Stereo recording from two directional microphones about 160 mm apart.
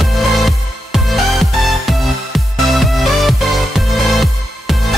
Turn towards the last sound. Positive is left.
turn(degrees=0)  # may be behind; listen again after turning